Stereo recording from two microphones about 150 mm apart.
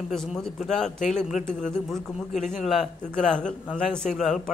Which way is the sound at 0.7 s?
5° left (ahead or behind).